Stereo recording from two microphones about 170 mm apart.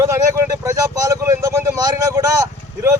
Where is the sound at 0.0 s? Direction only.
15° right (ahead or behind).